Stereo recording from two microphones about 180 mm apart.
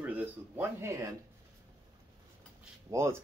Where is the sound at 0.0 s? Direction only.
10° right (ahead or behind).